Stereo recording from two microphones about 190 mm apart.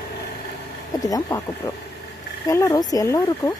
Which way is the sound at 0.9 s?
20° left (ahead or behind).